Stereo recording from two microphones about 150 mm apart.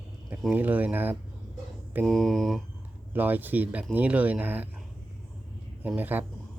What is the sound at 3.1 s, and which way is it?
Speech, 10° right (ahead or behind).